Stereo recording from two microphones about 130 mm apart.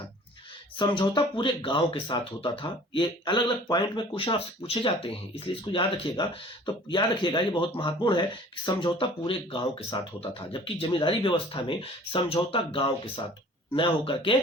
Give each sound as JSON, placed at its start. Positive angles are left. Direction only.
{"t": 0.8, "sound": "speech", "side_deg": 35}